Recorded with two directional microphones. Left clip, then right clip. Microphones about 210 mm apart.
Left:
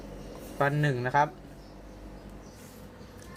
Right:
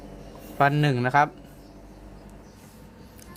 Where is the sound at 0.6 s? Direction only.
30° right (ahead or behind).